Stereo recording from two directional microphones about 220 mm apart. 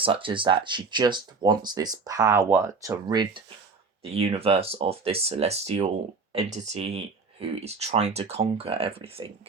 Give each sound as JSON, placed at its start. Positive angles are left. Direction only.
{"t": 0.0, "sound": "speech", "side_deg": -25}